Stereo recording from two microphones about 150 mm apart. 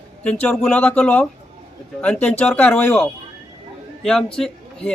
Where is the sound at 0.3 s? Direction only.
5° left (ahead or behind).